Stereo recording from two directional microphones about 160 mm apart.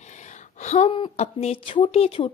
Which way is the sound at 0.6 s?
45° left (ahead or behind).